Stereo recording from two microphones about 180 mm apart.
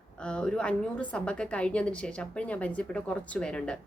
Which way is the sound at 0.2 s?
5° left (ahead or behind).